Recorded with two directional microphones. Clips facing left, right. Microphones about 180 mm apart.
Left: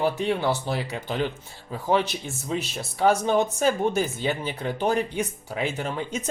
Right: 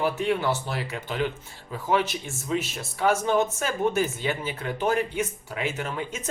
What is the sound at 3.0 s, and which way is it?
Speech, 35° left (ahead or behind).